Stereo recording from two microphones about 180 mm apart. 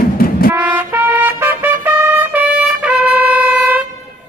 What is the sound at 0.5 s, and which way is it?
Trumpet, 10° right (ahead or behind).